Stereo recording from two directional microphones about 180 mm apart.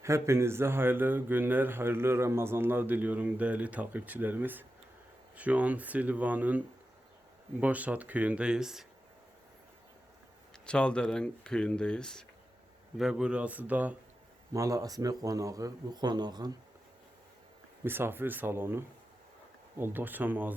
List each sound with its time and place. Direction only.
0.0 s a man's voice: 15° right (ahead or behind)
10.7 s a man's voice: 5° left (ahead or behind); by 16.6 s 20° right (ahead or behind)
17.8 s a man's voice: 10° right (ahead or behind)